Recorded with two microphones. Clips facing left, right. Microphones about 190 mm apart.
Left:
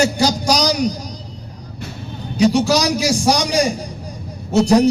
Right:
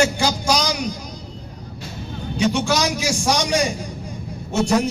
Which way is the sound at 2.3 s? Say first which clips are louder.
Left 5 dB; 35° left (ahead or behind).